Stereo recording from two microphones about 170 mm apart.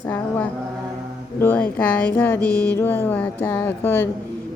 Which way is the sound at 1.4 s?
10° left (ahead or behind).